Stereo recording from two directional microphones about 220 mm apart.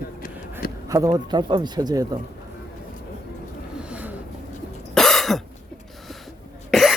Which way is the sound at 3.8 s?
5° right (ahead or behind).